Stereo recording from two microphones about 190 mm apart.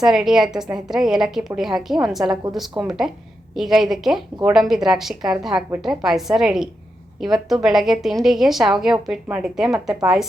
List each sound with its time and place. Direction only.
0.0 s a woman's voice: centre (ahead or behind)